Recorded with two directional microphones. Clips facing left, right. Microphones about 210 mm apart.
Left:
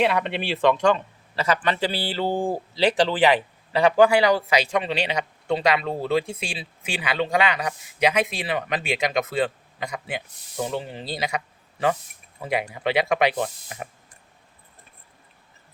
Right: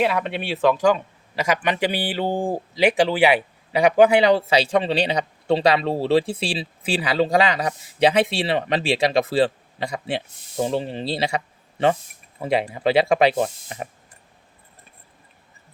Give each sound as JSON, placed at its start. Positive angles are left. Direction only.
{"t": 0.0, "sound": "a man's voice", "side_deg": 0}